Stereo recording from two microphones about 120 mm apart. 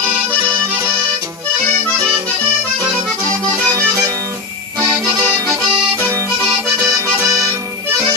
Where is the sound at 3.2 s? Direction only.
25° right (ahead or behind).